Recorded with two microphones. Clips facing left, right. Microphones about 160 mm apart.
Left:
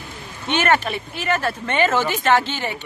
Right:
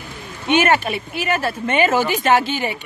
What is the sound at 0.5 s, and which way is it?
Speech, 10° right (ahead or behind).